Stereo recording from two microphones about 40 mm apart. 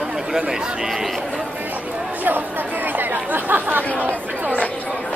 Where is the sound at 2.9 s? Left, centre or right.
Right.